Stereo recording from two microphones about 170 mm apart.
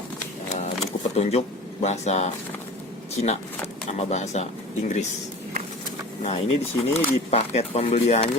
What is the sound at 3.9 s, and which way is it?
Speech, 40° left (ahead or behind).